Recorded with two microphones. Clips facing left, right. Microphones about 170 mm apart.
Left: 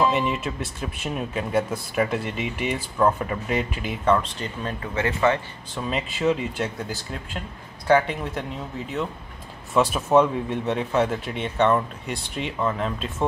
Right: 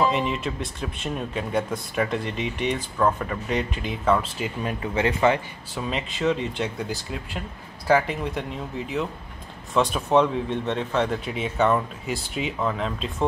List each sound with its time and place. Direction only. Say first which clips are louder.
0.1 s speech: left 1 dB; centre (ahead or behind)
4.9 s speech: right 1 dB; 20° right (ahead or behind)
5.8 s speech: left 1 dB; centre (ahead or behind)